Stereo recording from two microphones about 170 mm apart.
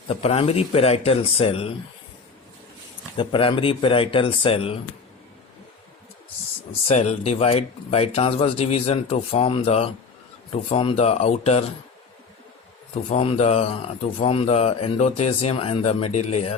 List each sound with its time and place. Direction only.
0.1 s speech: 35° left (ahead or behind)
3.2 s speech: 30° left (ahead or behind)
6.8 s speech: 40° left (ahead or behind)
13.1 s speech: 35° left (ahead or behind)